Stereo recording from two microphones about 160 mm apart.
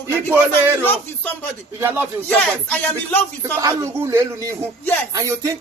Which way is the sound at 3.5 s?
20° right (ahead or behind).